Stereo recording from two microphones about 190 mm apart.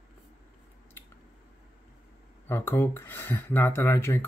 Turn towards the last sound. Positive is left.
turn(degrees=15)  # may be behind; listen again after turning